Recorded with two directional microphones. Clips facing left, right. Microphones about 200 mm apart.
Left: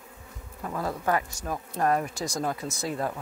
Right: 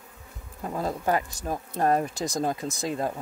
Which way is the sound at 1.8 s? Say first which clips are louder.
Right 2 dB; 25° right (ahead or behind).